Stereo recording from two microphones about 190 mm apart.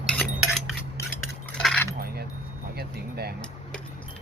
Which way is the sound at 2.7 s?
55° right (ahead or behind).